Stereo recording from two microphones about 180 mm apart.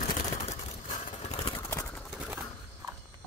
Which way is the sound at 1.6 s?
15° left (ahead or behind).